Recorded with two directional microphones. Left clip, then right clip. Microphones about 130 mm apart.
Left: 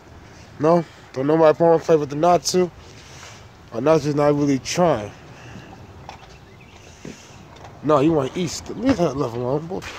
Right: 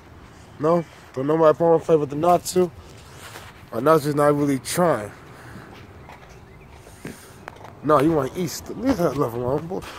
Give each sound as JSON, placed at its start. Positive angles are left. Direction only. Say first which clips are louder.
{"t": 0.6, "sound": "speech", "louder": "left 3 dB", "side_deg": 15}
{"t": 3.7, "sound": "a man's voice", "louder": "even", "side_deg": 5}
{"t": 7.8, "sound": "speech", "louder": "left 1 dB", "side_deg": 5}
{"t": 8.9, "sound": "a man's voice", "louder": "even", "side_deg": 15}
{"t": 9.2, "sound": "speech", "louder": "even", "side_deg": 0}